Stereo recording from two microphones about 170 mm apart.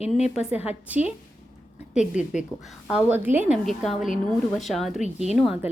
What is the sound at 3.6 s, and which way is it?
Speech, centre (ahead or behind).